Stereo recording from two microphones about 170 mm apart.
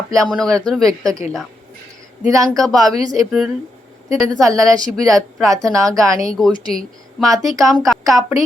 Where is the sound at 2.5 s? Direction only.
Centre (ahead or behind).